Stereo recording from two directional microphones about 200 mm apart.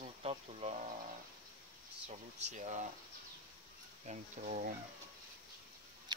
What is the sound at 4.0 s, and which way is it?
Speech, 35° right (ahead or behind).